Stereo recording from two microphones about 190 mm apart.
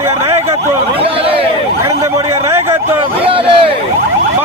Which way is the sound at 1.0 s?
30° right (ahead or behind).